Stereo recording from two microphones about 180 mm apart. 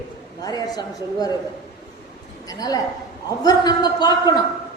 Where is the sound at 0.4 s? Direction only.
20° left (ahead or behind).